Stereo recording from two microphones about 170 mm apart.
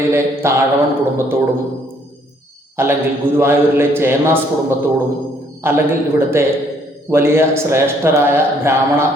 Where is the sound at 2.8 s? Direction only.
15° right (ahead or behind).